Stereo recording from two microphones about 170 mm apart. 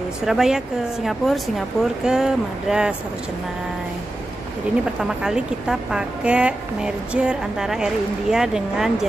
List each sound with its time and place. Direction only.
0.2 s a woman's voice: 5° right (ahead or behind)
5.0 s a woman's voice: 5° right (ahead or behind)